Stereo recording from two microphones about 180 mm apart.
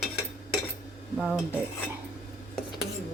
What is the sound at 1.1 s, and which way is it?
Dishes, 5° right (ahead or behind).